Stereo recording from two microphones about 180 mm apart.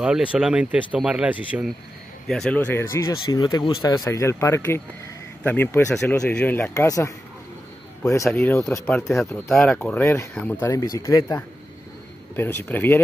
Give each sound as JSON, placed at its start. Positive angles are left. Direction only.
{"t": 0.0, "sound": "speech", "side_deg": -5}